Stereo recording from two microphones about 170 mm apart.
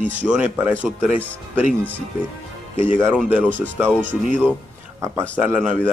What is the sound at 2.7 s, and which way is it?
Speech, 10° right (ahead or behind).